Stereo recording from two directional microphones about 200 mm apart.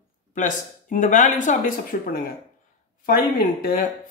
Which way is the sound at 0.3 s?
40° left (ahead or behind).